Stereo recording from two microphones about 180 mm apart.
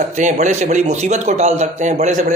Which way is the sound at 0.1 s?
40° right (ahead or behind).